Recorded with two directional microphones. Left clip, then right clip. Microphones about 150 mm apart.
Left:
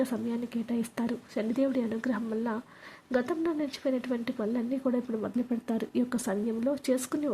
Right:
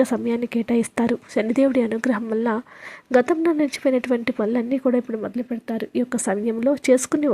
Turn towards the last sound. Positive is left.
turn(degrees=-40)  # may be behind; listen again after turning